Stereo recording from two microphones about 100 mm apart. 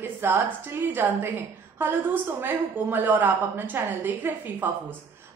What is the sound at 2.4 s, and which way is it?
A woman's voice, 20° right (ahead or behind).